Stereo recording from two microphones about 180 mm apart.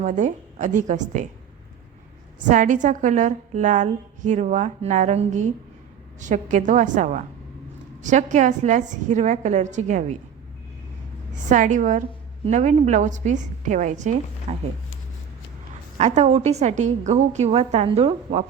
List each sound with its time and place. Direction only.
0.0 s a woman's voice: 45° right (ahead or behind)
2.5 s a woman's voice: 45° right (ahead or behind)
11.3 s a woman's voice: 45° right (ahead or behind)
16.0 s a woman's voice: 40° right (ahead or behind)